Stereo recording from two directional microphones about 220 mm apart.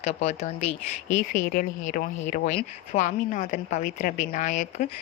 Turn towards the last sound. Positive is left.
turn(degrees=35)  # may be behind; listen again after turning